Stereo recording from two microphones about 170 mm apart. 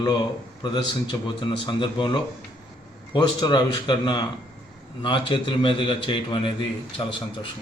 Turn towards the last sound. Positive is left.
turn(degrees=30)  # may be behind; listen again after turning